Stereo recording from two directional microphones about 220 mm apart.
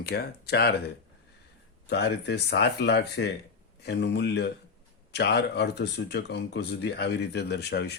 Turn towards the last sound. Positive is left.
turn(degrees=50)  # may be behind; listen again after turning